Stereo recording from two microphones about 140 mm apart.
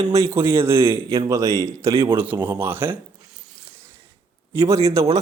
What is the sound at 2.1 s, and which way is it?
Speech, 15° right (ahead or behind).